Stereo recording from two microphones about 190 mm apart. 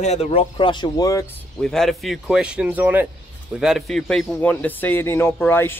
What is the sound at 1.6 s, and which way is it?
Speech, centre (ahead or behind).